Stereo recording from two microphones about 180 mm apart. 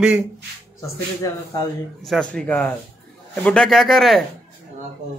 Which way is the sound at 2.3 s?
5° left (ahead or behind).